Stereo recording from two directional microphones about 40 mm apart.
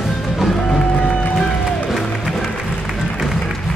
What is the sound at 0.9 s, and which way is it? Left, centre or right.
Music, left.